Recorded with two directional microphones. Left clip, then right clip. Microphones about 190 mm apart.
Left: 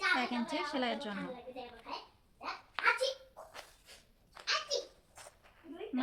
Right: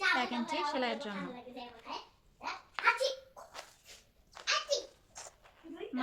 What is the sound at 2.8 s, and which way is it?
Hands, 10° left (ahead or behind).